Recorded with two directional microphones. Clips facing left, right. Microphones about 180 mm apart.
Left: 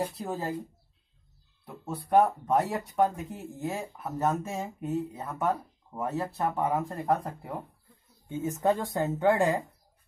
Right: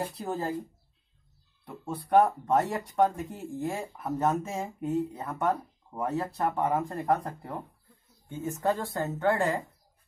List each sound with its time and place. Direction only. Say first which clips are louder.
0.0 s speech: even; centre (ahead or behind)
1.7 s speech: right 1 dB; centre (ahead or behind)
8.3 s speech: left 2 dB; 20° left (ahead or behind)